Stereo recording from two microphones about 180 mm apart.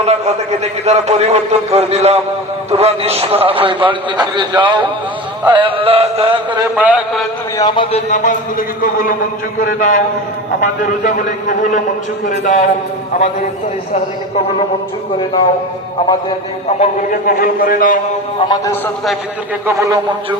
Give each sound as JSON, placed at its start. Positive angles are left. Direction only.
{"t": 0.0, "sound": "a man's voice", "side_deg": -35}
{"t": 5.5, "sound": "music", "side_deg": -30}
{"t": 6.7, "sound": "a man's voice", "side_deg": -5}
{"t": 7.6, "sound": "speech", "side_deg": 30}
{"t": 8.1, "sound": "a man's voice", "side_deg": 45}
{"t": 15.2, "sound": "speech", "side_deg": 25}
{"t": 16.8, "sound": "a man's voice", "side_deg": 50}
{"t": 18.4, "sound": "speech", "side_deg": 20}
{"t": 19.6, "sound": "a man's voice", "side_deg": -15}